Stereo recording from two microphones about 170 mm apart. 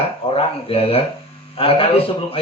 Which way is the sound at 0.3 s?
35° left (ahead or behind).